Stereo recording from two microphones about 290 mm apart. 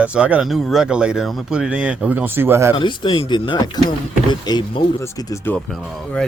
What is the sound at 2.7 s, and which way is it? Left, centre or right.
Speech, centre.